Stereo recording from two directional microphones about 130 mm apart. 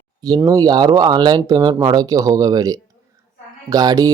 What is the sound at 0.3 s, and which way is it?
Speech, 25° right (ahead or behind).